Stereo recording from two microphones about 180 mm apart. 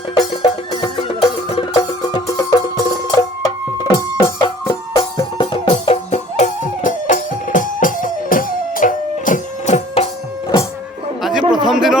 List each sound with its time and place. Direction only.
0.2 s music: 25° left (ahead or behind)
2.0 s music: 20° left (ahead or behind); by 10.1 s 35° left (ahead or behind)
11.2 s a sound: centre (ahead or behind)